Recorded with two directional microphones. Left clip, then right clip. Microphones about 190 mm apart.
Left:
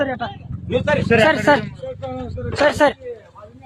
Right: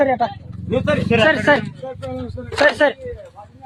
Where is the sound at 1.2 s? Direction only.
10° left (ahead or behind).